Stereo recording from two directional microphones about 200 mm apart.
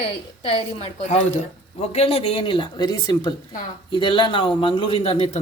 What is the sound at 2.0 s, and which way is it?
A man's voice, 30° left (ahead or behind).